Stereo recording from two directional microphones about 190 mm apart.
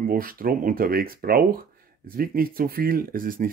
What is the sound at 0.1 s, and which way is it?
Speech, 50° right (ahead or behind).